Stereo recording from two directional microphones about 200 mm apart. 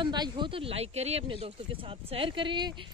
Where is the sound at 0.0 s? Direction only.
20° right (ahead or behind).